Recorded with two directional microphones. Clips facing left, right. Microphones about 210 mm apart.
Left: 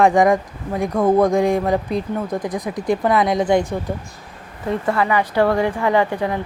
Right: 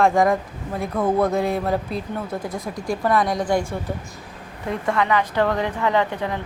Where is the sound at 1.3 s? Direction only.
5° right (ahead or behind).